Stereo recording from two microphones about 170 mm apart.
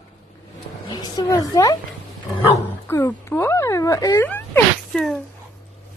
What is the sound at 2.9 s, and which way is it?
Speech, 15° left (ahead or behind).